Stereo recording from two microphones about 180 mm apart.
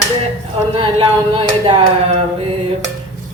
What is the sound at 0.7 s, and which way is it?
A woman's voice, 30° right (ahead or behind).